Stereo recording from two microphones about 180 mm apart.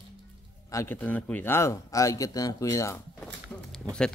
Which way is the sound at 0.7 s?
15° left (ahead or behind).